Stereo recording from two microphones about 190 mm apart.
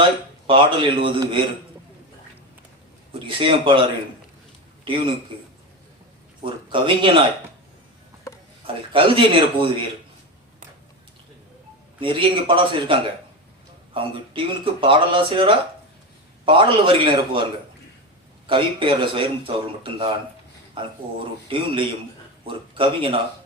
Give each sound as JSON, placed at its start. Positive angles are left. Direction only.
{"t": 0.4, "sound": "speech", "side_deg": -25}
{"t": 3.1, "sound": "speech", "side_deg": -25}
{"t": 4.9, "sound": "speech", "side_deg": -25}
{"t": 6.4, "sound": "speech", "side_deg": -25}
{"t": 8.6, "sound": "speech", "side_deg": -30}
{"t": 11.9, "sound": "speech", "side_deg": -25}
{"t": 18.4, "sound": "speech", "side_deg": -25}